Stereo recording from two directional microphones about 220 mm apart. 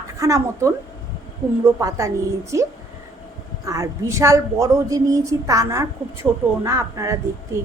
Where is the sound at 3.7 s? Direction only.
15° right (ahead or behind).